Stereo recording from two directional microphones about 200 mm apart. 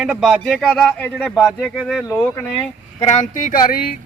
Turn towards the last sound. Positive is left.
turn(degrees=50)  # may be behind; listen again after turning